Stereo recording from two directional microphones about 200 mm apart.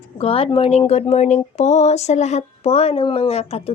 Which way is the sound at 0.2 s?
30° left (ahead or behind).